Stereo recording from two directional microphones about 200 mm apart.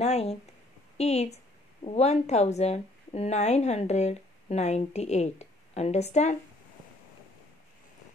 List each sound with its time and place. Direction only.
0.0 s a woman's voice: 30° left (ahead or behind)